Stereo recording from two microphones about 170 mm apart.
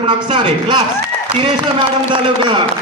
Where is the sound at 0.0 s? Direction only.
30° right (ahead or behind).